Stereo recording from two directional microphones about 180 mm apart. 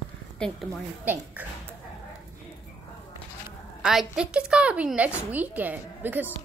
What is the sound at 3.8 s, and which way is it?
A woman's voice, 5° right (ahead or behind).